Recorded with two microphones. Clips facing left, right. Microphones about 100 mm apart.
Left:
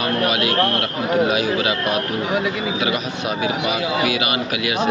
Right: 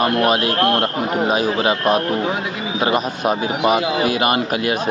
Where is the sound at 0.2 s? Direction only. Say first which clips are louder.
Right 2 dB; 40° right (ahead or behind).